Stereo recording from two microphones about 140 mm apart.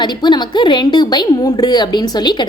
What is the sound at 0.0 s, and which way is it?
A woman's voice, 30° left (ahead or behind).